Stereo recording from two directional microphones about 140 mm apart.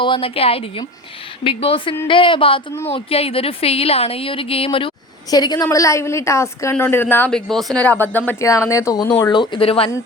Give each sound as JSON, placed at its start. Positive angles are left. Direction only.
{"t": 0.0, "sound": "a woman's voice", "side_deg": 40}
{"t": 5.3, "sound": "a woman's voice", "side_deg": 30}